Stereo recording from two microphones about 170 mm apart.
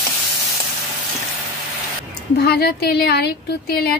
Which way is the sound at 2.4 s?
70° left (ahead or behind).